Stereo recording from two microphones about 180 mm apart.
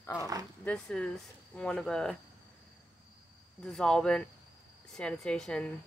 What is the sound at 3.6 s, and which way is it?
Speech, 5° left (ahead or behind).